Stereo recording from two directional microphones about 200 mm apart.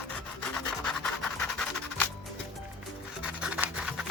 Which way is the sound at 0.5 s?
5° left (ahead or behind).